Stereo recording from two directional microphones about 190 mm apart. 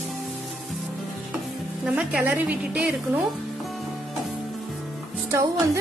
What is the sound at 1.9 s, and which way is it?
Speech, 5° right (ahead or behind).